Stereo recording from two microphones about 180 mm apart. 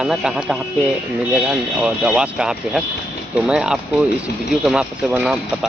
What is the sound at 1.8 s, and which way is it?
Speech, 5° right (ahead or behind).